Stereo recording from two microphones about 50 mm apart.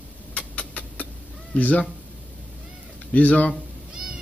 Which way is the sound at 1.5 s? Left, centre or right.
Left.